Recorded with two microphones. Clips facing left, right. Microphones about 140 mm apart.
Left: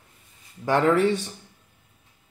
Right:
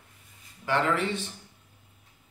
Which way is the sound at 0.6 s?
40° left (ahead or behind).